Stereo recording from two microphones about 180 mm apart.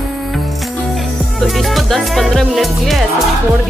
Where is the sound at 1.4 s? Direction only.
Centre (ahead or behind).